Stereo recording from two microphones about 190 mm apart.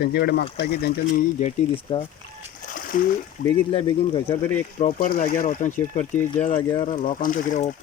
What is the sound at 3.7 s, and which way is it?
Speech, 25° left (ahead or behind).